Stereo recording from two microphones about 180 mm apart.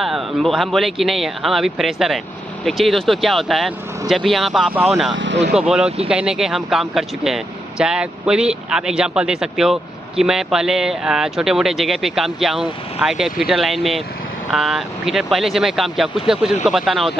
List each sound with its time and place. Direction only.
0.0 s speech: centre (ahead or behind)
5.1 s speech: 85° right
5.6 s speech: 5° right (ahead or behind)